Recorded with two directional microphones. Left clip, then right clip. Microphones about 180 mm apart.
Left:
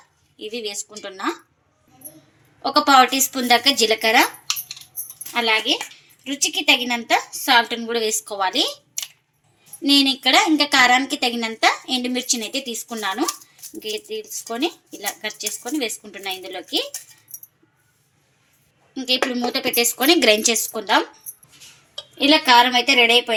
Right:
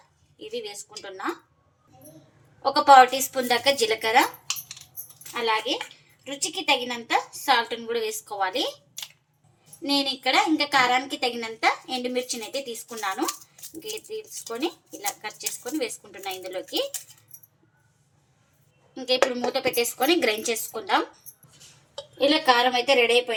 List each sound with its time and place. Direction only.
0.3 s a woman's voice: 50° left (ahead or behind)
2.6 s a woman's voice: 45° left (ahead or behind)
5.3 s a woman's voice: 55° left (ahead or behind)
9.8 s a woman's voice: 50° left (ahead or behind)
18.9 s a woman's voice: 50° left (ahead or behind)
22.2 s a woman's voice: 50° left (ahead or behind)